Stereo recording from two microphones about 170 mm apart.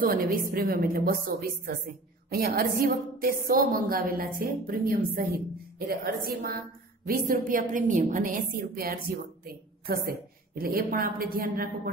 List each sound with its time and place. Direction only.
0.0 s a woman's voice: 55° right (ahead or behind)